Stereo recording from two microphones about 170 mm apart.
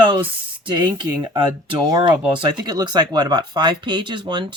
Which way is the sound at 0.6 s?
25° right (ahead or behind).